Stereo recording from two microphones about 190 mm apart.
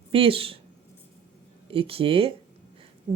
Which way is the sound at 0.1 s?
30° right (ahead or behind).